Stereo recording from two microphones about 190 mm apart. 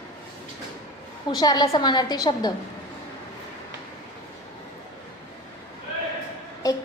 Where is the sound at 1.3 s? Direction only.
20° left (ahead or behind).